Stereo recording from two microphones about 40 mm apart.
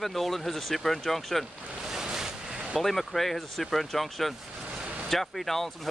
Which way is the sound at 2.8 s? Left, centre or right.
Centre.